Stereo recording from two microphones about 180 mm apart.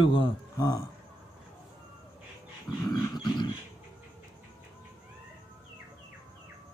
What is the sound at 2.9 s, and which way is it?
Speech, 20° left (ahead or behind).